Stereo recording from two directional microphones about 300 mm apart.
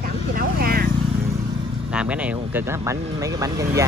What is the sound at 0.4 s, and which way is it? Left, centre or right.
Vehicle, right.